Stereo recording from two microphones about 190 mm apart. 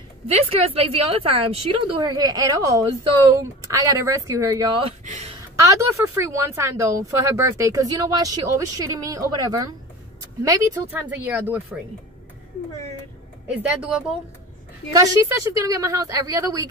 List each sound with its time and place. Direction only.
0.7 s a woman's voice: 30° right (ahead or behind)
5.0 s speech: 35° right (ahead or behind)
5.6 s speech: 15° right (ahead or behind)
13.6 s speech: 5° right (ahead or behind)
14.9 s speech: 20° right (ahead or behind)